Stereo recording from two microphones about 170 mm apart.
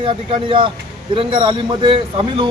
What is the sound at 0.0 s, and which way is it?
Speech, 30° right (ahead or behind).